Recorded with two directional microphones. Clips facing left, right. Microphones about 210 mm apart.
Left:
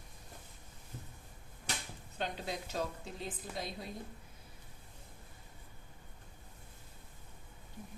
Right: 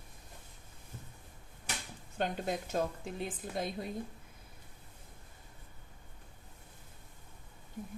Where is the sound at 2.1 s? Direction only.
50° right (ahead or behind).